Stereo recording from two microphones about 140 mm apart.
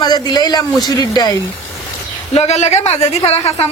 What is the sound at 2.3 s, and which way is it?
Speech, 50° left (ahead or behind).